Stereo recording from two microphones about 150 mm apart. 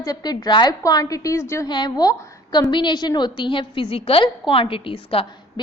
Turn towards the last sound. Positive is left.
turn(degrees=40)  # may be behind; listen again after turning